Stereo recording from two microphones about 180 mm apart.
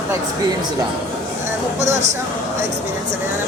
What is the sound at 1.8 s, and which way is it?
Speech, 40° right (ahead or behind).